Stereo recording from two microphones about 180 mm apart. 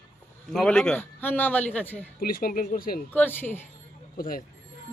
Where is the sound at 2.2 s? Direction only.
55° left (ahead or behind).